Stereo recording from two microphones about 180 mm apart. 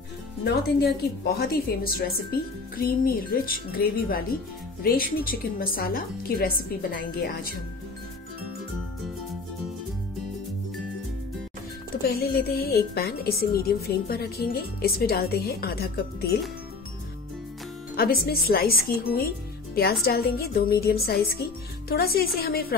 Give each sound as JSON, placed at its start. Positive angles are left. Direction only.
{"t": 0.4, "sound": "a woman's voice", "side_deg": 65}
{"t": 12.1, "sound": "a woman's voice", "side_deg": 60}
{"t": 17.9, "sound": "a woman's voice", "side_deg": 55}